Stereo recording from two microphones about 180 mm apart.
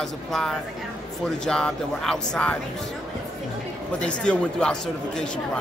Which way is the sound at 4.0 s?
5° left (ahead or behind).